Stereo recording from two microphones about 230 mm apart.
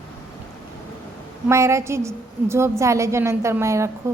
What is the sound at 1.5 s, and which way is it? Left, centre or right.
A woman's voice, centre.